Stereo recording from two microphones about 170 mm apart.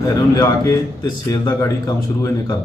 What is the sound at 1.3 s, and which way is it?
Speech, 20° left (ahead or behind).